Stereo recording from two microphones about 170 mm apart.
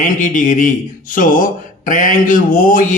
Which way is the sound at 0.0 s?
50° left (ahead or behind).